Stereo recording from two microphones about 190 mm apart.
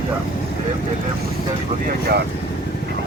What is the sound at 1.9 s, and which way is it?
Speech, 55° right (ahead or behind).